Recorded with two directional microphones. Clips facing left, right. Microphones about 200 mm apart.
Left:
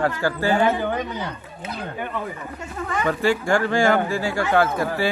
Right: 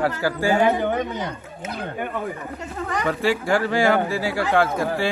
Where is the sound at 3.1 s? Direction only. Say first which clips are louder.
Left 1 dB; centre (ahead or behind).